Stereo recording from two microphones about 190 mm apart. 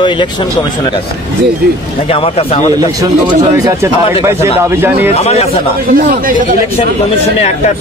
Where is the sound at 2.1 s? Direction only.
30° left (ahead or behind).